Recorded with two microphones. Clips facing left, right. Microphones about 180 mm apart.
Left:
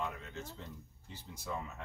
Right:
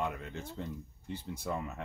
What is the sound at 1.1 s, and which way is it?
Speech, 55° right (ahead or behind).